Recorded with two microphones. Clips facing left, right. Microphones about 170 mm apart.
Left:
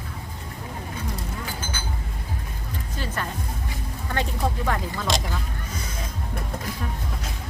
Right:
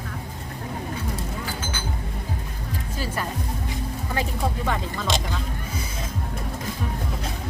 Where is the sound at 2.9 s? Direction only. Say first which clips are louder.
Right 2 dB; 5° right (ahead or behind).